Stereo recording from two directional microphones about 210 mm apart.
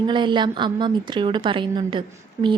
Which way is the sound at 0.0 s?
20° right (ahead or behind).